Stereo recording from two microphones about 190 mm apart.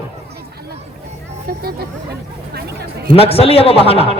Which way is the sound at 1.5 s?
50° right (ahead or behind).